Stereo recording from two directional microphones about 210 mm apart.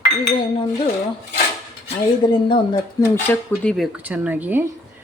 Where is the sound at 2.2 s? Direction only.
20° left (ahead or behind).